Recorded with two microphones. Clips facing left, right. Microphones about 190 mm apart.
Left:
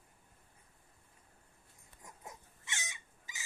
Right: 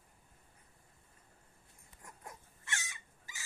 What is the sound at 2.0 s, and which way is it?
Dog, 20° left (ahead or behind).